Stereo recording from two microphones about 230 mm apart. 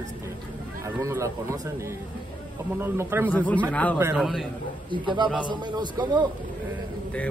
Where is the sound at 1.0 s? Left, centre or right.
Centre.